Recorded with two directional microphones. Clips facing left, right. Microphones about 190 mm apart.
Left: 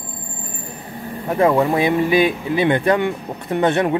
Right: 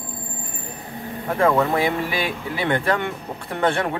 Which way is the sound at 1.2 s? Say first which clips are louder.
Left 3 dB; 20° left (ahead or behind).